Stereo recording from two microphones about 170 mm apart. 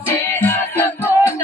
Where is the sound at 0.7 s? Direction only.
15° left (ahead or behind).